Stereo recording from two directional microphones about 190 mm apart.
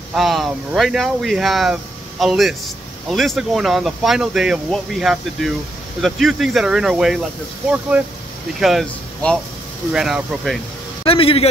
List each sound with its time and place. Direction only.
0.1 s speech: centre (ahead or behind)
8.5 s speech: centre (ahead or behind)
11.1 s speech: 30° left (ahead or behind)